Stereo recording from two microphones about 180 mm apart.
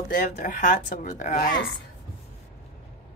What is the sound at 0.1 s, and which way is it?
Speech, 45° left (ahead or behind).